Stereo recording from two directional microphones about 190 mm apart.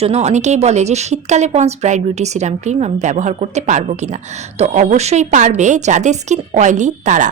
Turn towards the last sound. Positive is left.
turn(degrees=-40)  # may be behind; listen again after turning